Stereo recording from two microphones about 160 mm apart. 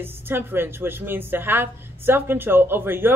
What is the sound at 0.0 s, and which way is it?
A woman's voice, 15° right (ahead or behind).